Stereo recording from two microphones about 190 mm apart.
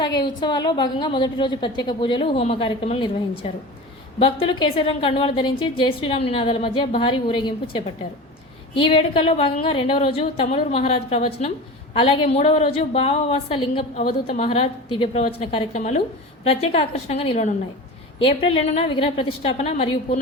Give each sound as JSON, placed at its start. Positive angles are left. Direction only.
{"t": 0.0, "sound": "a woman's voice", "side_deg": 25}